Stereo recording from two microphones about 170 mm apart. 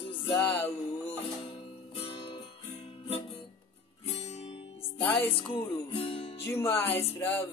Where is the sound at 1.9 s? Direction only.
35° left (ahead or behind).